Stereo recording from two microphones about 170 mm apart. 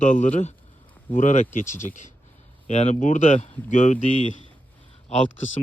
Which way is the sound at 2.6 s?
45° left (ahead or behind).